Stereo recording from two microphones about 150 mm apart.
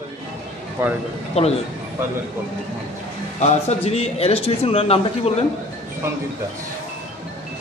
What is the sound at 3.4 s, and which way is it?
A man's voice, 45° left (ahead or behind).